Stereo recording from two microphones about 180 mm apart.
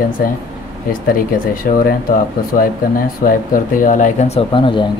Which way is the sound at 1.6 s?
60° left (ahead or behind).